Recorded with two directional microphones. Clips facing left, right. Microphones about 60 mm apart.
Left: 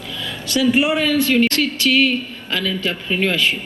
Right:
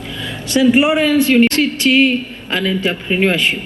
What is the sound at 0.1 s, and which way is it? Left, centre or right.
Speech, right.